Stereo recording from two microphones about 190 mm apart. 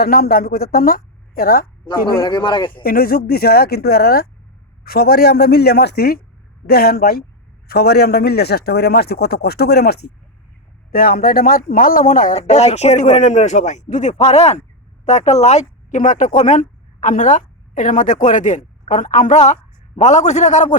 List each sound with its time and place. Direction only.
0.0 s a woman's voice: 55° left (ahead or behind)
2.2 s speech: 25° left (ahead or behind)
2.8 s a woman's voice: 50° left (ahead or behind)